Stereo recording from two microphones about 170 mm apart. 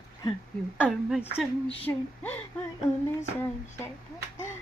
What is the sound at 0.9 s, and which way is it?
Speech, 10° left (ahead or behind).